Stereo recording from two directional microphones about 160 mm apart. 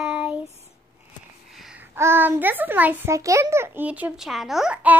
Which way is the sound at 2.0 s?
15° right (ahead or behind).